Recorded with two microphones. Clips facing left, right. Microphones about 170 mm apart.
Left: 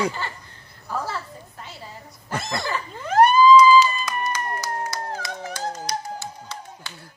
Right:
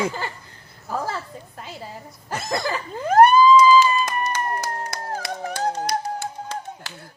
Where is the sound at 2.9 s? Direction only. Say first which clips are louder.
Right 3 dB; 45° right (ahead or behind).